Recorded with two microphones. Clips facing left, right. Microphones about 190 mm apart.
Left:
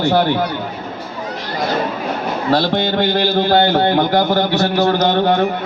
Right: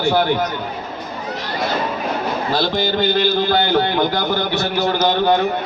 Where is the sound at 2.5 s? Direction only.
65° left (ahead or behind).